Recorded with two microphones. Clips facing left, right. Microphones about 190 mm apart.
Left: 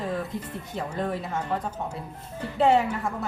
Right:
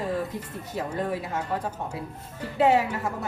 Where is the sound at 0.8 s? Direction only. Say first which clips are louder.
Right 1 dB; 5° right (ahead or behind).